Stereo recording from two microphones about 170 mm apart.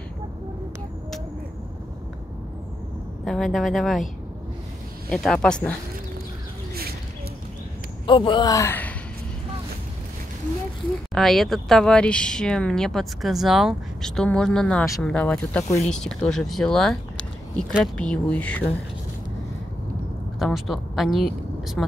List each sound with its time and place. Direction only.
3.3 s speech: centre (ahead or behind)
5.1 s speech: 5° left (ahead or behind)
8.1 s speech: 25° left (ahead or behind); by 8.9 s 10° left (ahead or behind)
11.1 s speech: centre (ahead or behind)
20.3 s speech: centre (ahead or behind)